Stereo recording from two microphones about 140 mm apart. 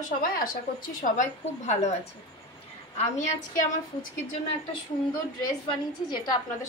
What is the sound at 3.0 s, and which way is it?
Speech, 55° left (ahead or behind).